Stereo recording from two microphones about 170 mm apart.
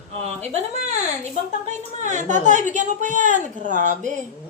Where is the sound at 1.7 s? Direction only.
45° right (ahead or behind).